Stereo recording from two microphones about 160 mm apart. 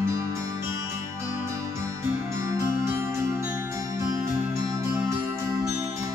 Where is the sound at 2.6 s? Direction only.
15° right (ahead or behind).